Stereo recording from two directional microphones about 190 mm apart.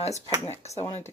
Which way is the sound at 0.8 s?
15° left (ahead or behind).